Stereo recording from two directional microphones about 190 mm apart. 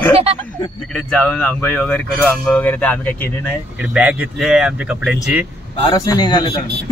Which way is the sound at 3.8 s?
5° right (ahead or behind).